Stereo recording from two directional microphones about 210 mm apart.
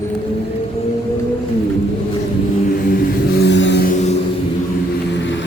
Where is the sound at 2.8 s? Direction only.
45° left (ahead or behind).